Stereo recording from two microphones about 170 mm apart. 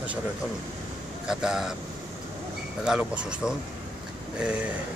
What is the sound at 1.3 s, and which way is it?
Speech, 5° right (ahead or behind).